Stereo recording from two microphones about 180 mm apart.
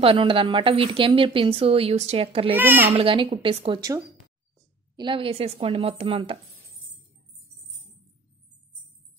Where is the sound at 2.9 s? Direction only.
30° right (ahead or behind).